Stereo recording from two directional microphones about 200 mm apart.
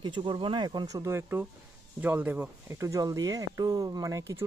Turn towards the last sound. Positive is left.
turn(degrees=-15)  # may be behind; listen again after turning